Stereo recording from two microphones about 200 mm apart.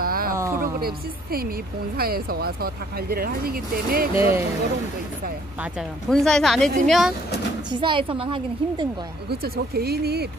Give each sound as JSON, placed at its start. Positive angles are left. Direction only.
{"t": 0.0, "sound": "a sound", "side_deg": -45}
{"t": 0.4, "sound": "a sound", "side_deg": -15}
{"t": 0.7, "sound": "speech", "side_deg": -50}
{"t": 4.1, "sound": "speech", "side_deg": -10}
{"t": 5.6, "sound": "speech", "side_deg": 0}
{"t": 7.8, "sound": "a woman's voice", "side_deg": -25}
{"t": 9.3, "sound": "speech", "side_deg": -50}